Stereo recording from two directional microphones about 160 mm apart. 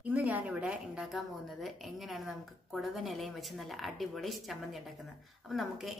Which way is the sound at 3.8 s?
Centre (ahead or behind).